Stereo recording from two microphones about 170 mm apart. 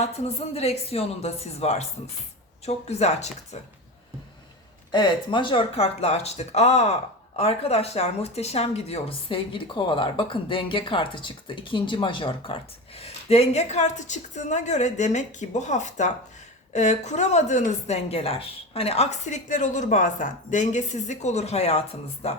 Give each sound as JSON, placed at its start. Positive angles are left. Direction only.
{"t": 0.0, "sound": "speech", "side_deg": 35}
{"t": 4.9, "sound": "a woman's voice", "side_deg": 25}